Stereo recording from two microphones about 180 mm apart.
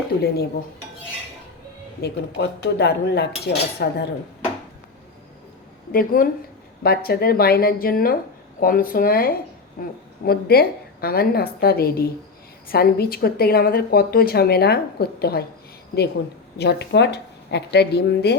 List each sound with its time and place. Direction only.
2.0 s a woman's voice: 65° left (ahead or behind)
5.9 s a woman's voice: 55° left (ahead or behind)
16.6 s speech: 70° left (ahead or behind)